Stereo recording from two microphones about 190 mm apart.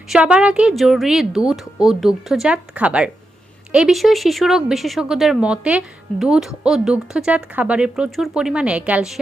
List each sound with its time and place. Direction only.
0.1 s speech: 5° right (ahead or behind)